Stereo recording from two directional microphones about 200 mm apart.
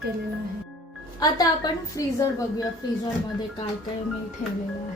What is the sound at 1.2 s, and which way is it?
A woman's voice, 20° left (ahead or behind).